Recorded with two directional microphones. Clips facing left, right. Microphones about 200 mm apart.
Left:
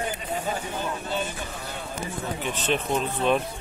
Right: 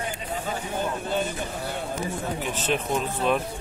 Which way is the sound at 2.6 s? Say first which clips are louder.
Left 1 dB; 5° right (ahead or behind).